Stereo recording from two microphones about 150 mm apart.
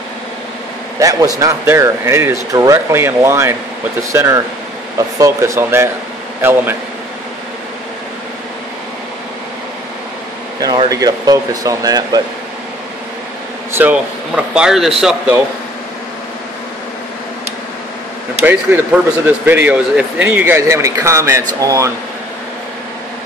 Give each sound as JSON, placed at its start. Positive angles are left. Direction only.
{"t": 0.9, "sound": "speech", "side_deg": -25}
{"t": 10.9, "sound": "speech", "side_deg": -25}
{"t": 13.7, "sound": "speech", "side_deg": -10}
{"t": 18.4, "sound": "speech", "side_deg": -15}